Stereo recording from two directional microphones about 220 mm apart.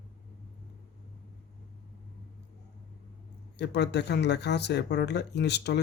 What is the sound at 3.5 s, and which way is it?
Speech, 50° left (ahead or behind).